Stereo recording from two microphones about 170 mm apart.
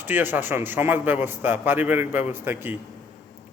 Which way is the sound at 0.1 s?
10° right (ahead or behind).